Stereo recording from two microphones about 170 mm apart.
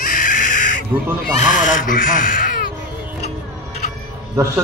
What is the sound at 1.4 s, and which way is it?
Speech, 50° left (ahead or behind).